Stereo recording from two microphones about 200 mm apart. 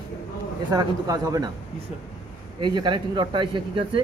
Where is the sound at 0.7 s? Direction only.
20° right (ahead or behind).